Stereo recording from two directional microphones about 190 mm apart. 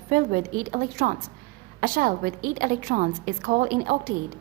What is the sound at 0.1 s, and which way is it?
A woman's voice, 45° right (ahead or behind).